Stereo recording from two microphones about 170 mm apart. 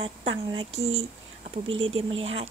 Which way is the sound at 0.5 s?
35° right (ahead or behind).